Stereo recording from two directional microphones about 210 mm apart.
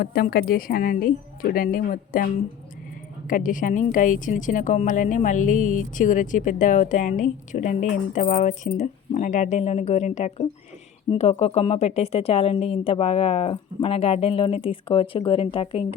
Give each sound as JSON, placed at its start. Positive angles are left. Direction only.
{"t": 0.0, "sound": "a woman's voice", "side_deg": 45}